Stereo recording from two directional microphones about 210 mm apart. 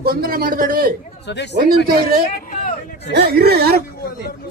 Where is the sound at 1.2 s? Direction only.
55° left (ahead or behind).